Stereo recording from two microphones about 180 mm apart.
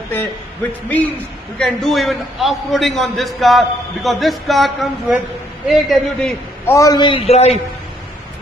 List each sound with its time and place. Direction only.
0.8 s a man's voice: 10° left (ahead or behind)
6.6 s a man's voice: 15° left (ahead or behind); by 7.5 s 35° left (ahead or behind)